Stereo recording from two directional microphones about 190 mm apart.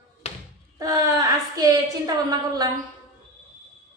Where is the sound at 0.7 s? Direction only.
20° right (ahead or behind).